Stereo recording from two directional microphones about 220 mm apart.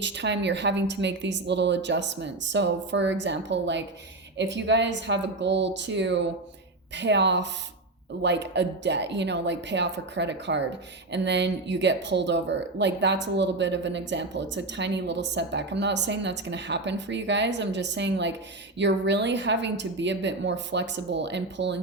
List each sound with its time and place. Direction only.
0.0 s speech: 50° right (ahead or behind)